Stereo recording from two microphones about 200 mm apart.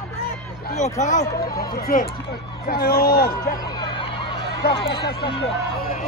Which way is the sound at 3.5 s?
20° left (ahead or behind).